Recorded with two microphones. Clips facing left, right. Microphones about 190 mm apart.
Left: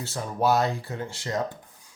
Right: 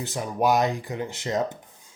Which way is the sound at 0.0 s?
15° right (ahead or behind).